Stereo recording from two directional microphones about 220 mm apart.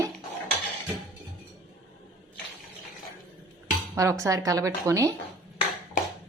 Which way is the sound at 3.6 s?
15° right (ahead or behind).